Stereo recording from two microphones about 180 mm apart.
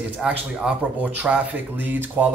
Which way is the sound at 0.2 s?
5° right (ahead or behind).